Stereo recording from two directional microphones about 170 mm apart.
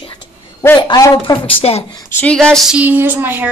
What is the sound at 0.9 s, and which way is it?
Speech, 20° left (ahead or behind).